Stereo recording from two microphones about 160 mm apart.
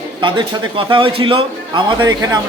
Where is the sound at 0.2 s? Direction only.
30° right (ahead or behind).